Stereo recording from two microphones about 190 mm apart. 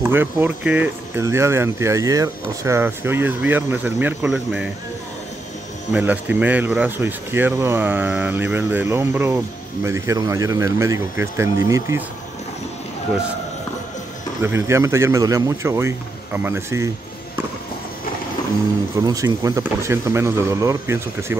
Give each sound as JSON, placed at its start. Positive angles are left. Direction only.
{"t": 0.0, "sound": "speech", "side_deg": -10}
{"t": 5.9, "sound": "speech", "side_deg": -10}
{"t": 14.4, "sound": "speech", "side_deg": -15}
{"t": 18.9, "sound": "speech", "side_deg": -20}